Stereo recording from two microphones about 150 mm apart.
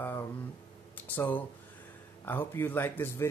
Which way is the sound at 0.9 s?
10° left (ahead or behind).